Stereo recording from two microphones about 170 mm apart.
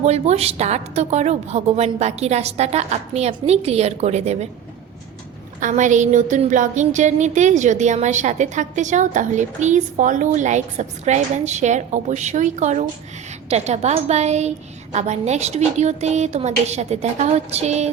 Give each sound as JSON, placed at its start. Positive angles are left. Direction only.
{"t": 0.0, "sound": "a woman's voice", "side_deg": -40}
{"t": 5.5, "sound": "a woman's voice", "side_deg": -45}